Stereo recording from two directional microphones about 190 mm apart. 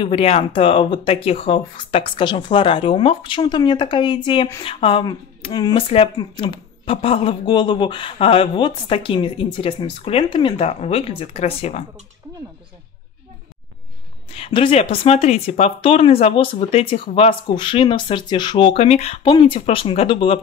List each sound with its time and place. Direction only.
0.0 s speech: 30° left (ahead or behind)
14.3 s speech: 30° left (ahead or behind)